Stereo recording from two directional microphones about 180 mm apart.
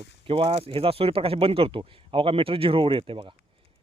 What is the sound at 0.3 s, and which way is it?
Speech, 30° right (ahead or behind).